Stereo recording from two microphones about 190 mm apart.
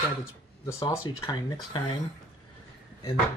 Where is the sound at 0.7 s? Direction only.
15° left (ahead or behind).